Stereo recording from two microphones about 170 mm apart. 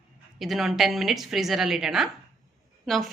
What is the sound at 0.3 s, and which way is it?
A woman's voice, centre (ahead or behind).